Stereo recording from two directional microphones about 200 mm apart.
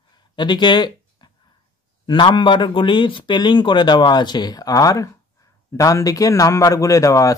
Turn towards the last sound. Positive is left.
turn(degrees=15)  # may be behind; listen again after turning